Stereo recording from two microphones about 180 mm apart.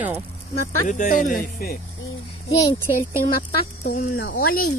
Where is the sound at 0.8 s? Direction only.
45° left (ahead or behind).